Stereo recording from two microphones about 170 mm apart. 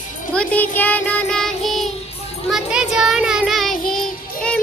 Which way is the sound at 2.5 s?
5° right (ahead or behind).